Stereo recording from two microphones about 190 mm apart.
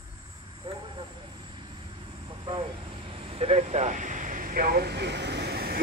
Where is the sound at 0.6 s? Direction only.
25° right (ahead or behind).